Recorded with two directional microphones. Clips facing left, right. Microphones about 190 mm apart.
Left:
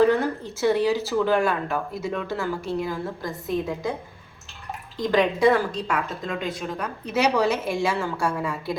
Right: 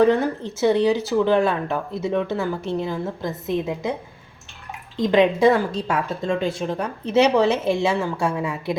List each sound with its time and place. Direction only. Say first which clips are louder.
0.0 s speech: right 2 dB; 20° right (ahead or behind)
4.9 s speech: right 4 dB; 25° right (ahead or behind)